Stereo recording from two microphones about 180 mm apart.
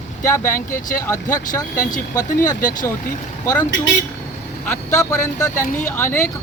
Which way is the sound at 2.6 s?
45° left (ahead or behind).